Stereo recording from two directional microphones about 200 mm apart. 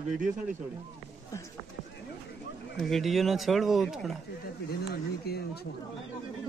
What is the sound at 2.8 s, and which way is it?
Speech, centre (ahead or behind).